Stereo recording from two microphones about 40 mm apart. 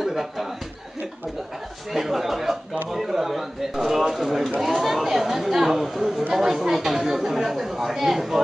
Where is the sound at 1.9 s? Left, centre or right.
Centre.